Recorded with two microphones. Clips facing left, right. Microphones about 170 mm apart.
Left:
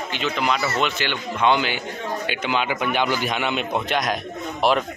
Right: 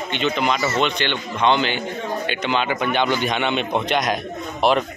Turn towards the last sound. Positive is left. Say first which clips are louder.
# right 2 dB
turn(degrees=0)  # may be behind; listen again after turning